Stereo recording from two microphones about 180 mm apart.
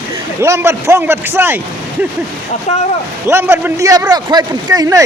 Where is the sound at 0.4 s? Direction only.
15° right (ahead or behind).